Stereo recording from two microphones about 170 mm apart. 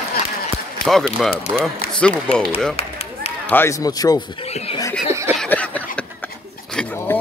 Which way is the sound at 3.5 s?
15° left (ahead or behind).